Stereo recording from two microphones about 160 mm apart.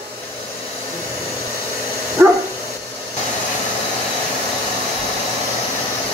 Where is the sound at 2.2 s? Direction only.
10° right (ahead or behind).